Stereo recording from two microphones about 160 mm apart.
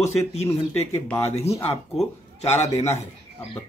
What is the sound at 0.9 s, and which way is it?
Speech, 15° left (ahead or behind).